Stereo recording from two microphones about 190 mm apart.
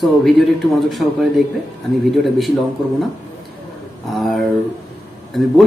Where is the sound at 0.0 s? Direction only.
Centre (ahead or behind).